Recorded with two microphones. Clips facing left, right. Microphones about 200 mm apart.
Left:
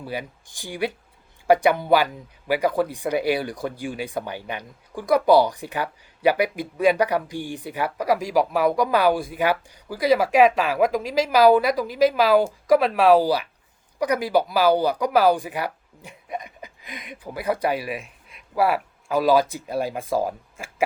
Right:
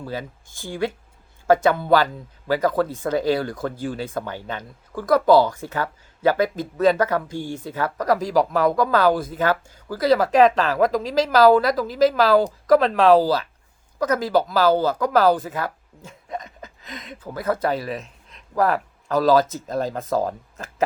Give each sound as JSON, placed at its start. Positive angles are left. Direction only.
{"t": 0.0, "sound": "speech", "side_deg": 15}